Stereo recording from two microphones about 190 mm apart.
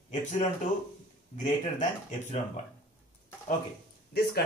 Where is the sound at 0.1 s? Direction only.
40° left (ahead or behind).